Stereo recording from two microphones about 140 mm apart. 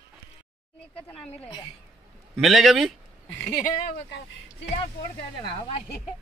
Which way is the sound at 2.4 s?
Centre (ahead or behind).